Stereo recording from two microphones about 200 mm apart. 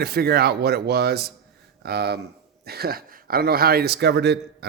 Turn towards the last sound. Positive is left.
turn(degrees=-55)  # may be behind; listen again after turning